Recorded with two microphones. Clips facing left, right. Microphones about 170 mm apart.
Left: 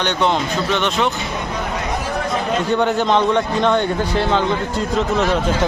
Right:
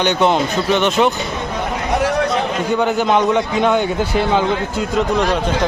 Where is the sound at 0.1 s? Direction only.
10° right (ahead or behind).